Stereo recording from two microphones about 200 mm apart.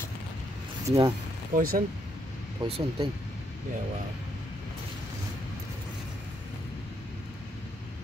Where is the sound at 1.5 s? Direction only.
45° right (ahead or behind).